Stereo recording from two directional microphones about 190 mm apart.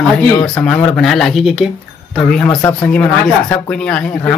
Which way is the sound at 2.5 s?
20° left (ahead or behind).